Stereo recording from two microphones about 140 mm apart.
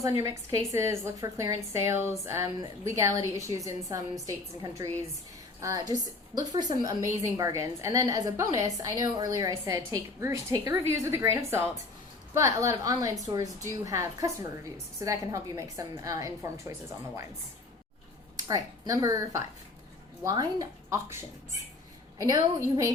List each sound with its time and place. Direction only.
0.0 s a woman's voice: 25° right (ahead or behind)
18.4 s a woman's voice: 25° right (ahead or behind)